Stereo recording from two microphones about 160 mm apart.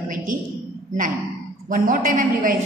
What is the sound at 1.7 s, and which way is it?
Speech, 60° right (ahead or behind).